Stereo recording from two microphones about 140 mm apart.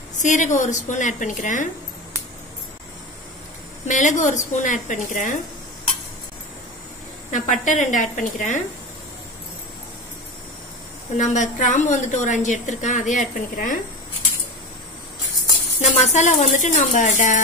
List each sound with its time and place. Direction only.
0.2 s a woman's voice: 60° left (ahead or behind)
3.8 s a woman's voice: 60° left (ahead or behind)
7.2 s snake: 60° left (ahead or behind)
7.6 s a woman's voice: 65° left (ahead or behind)
11.1 s a woman's voice: 60° left (ahead or behind)
15.8 s a woman's voice: 55° left (ahead or behind)